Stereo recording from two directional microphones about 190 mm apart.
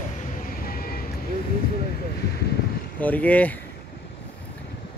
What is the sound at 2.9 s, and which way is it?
Speech, 10° left (ahead or behind).